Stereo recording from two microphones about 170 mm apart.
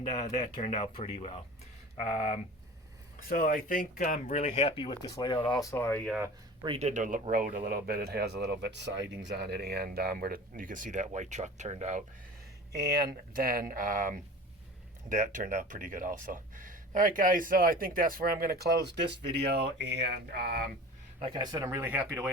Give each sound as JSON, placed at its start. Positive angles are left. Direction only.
{"t": 0.7, "sound": "speech", "side_deg": 35}
{"t": 3.2, "sound": "speech", "side_deg": 55}
{"t": 5.7, "sound": "speech", "side_deg": 15}
{"t": 6.1, "sound": "speech", "side_deg": -10}
{"t": 6.7, "sound": "speech", "side_deg": -45}
{"t": 12.7, "sound": "speech", "side_deg": -70}
{"t": 21.2, "sound": "speech", "side_deg": -30}